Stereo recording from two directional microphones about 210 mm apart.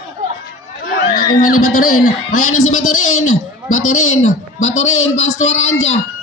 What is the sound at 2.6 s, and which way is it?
A man's voice, 80° left.